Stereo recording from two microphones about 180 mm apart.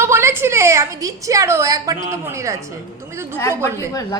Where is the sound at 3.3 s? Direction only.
15° left (ahead or behind).